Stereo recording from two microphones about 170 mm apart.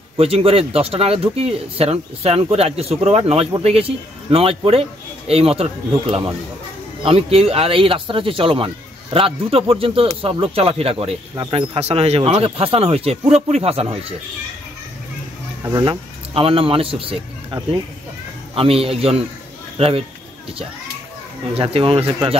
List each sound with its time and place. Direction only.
0.2 s speech: 35° right (ahead or behind)
15.6 s speech: 25° right (ahead or behind)
21.5 s speech: 35° right (ahead or behind)